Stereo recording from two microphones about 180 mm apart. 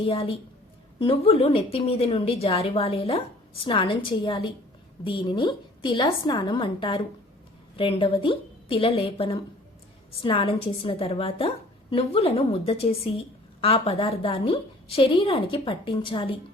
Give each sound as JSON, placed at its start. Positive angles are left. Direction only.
{"t": 0.0, "sound": "a woman's voice", "side_deg": 30}